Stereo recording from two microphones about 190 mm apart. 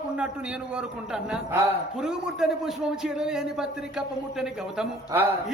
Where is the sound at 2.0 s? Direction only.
Centre (ahead or behind).